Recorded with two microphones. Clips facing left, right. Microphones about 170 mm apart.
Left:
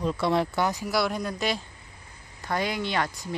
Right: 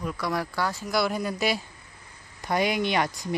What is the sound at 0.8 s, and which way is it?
Speech, centre (ahead or behind).